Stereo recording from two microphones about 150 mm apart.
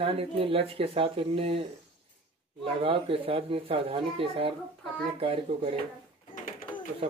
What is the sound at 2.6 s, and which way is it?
Speech, 40° right (ahead or behind).